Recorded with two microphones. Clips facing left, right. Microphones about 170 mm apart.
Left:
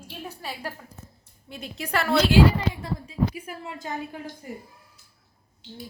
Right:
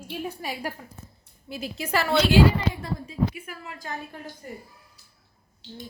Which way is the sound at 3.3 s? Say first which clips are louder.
Left 3 dB; 25° left (ahead or behind).